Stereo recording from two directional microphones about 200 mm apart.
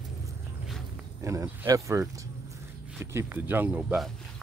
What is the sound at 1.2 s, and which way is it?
Speech, 15° right (ahead or behind).